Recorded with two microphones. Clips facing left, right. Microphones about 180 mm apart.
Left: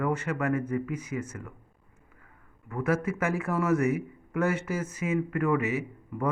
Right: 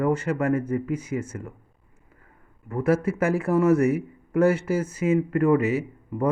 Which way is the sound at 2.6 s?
35° right (ahead or behind).